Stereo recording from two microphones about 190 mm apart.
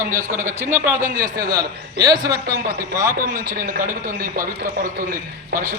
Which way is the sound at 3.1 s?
45° right (ahead or behind).